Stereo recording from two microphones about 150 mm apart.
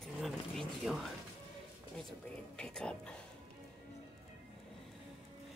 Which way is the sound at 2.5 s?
5° left (ahead or behind).